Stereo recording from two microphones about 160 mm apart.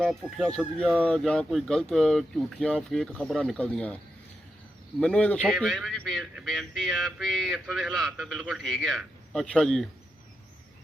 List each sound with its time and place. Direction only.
0.0 s speech: centre (ahead or behind)
4.9 s speech: 5° left (ahead or behind)